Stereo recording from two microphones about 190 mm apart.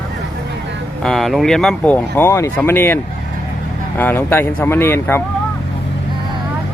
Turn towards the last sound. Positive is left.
turn(degrees=10)  # may be behind; listen again after turning